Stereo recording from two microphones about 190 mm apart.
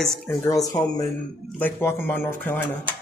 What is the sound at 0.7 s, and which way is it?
Speech, 15° left (ahead or behind).